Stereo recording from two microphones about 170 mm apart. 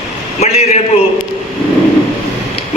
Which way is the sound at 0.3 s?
40° left (ahead or behind).